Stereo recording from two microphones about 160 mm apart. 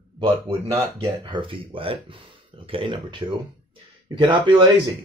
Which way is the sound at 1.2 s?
35° right (ahead or behind).